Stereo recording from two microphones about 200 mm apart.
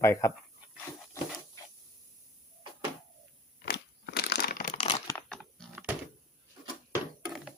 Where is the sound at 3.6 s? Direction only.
55° left (ahead or behind).